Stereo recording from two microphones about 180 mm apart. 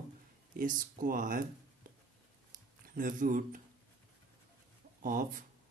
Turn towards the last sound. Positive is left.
turn(degrees=-50)  # may be behind; listen again after turning